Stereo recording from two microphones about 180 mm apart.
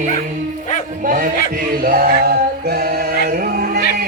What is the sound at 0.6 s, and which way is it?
Music, 45° left (ahead or behind).